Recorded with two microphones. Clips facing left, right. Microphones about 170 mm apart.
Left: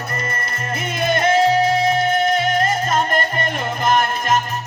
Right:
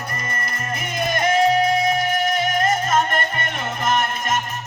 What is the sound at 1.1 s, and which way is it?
Music, 30° left (ahead or behind).